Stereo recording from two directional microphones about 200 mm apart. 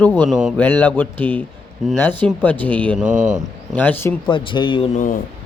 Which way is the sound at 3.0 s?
40° right (ahead or behind).